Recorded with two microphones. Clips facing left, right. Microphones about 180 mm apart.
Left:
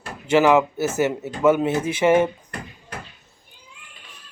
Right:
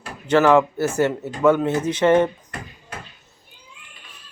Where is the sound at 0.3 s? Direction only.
10° left (ahead or behind).